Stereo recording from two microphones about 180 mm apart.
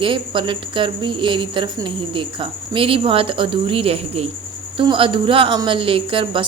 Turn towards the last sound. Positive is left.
turn(degrees=-30)  # may be behind; listen again after turning